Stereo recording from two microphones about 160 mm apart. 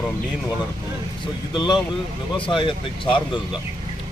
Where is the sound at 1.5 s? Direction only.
25° left (ahead or behind).